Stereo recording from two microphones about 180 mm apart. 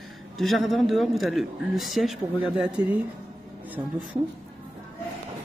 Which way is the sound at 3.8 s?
25° right (ahead or behind).